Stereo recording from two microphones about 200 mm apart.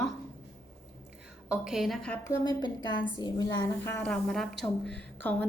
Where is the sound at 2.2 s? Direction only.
20° left (ahead or behind).